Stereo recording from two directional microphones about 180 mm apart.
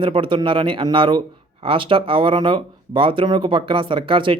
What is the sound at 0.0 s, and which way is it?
Speech, 30° right (ahead or behind).